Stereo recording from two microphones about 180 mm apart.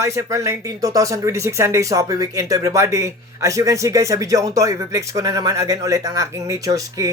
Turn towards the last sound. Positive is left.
turn(degrees=-20)  # may be behind; listen again after turning